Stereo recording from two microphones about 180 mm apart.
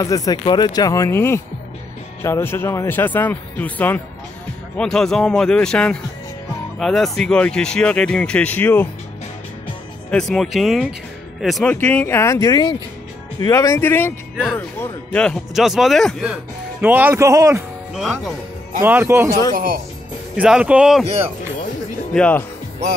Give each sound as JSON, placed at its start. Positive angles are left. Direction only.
{"t": 0.0, "sound": "speech", "side_deg": 20}
{"t": 10.1, "sound": "speech", "side_deg": 5}
{"t": 17.9, "sound": "speech", "side_deg": 0}
{"t": 18.8, "sound": "speech", "side_deg": -10}
{"t": 19.5, "sound": "speech", "side_deg": -50}
{"t": 20.3, "sound": "speech", "side_deg": -5}
{"t": 22.1, "sound": "speech", "side_deg": 5}